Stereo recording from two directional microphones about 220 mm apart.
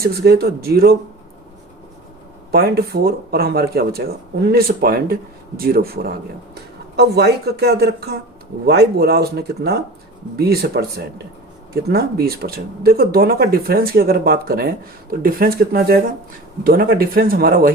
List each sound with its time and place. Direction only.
0.0 s speech: 45° right (ahead or behind)
2.5 s speech: 45° right (ahead or behind)